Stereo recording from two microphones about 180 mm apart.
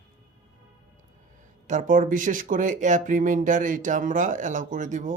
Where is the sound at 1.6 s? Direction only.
45° right (ahead or behind).